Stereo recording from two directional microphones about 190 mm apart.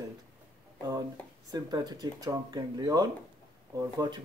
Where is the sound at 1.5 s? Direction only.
20° right (ahead or behind).